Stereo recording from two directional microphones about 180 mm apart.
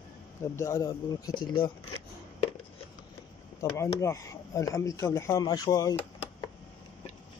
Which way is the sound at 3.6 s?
15° left (ahead or behind).